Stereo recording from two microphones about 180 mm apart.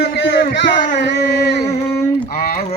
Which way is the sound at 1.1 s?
65° left (ahead or behind).